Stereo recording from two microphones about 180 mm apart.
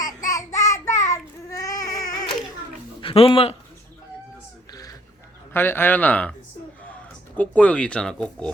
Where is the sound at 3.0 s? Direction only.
30° left (ahead or behind).